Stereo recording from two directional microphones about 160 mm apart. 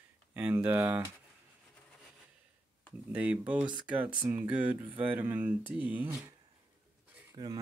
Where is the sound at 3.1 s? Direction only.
10° right (ahead or behind).